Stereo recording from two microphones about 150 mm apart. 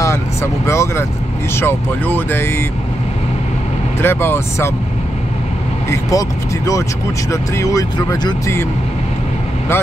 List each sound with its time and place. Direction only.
0.0 s vehicle: 20° left (ahead or behind)
1.5 s speech: 15° left (ahead or behind)
4.0 s speech: 15° left (ahead or behind)
5.9 s speech: 20° left (ahead or behind)